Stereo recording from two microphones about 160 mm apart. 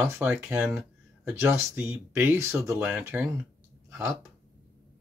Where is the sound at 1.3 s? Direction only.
15° right (ahead or behind).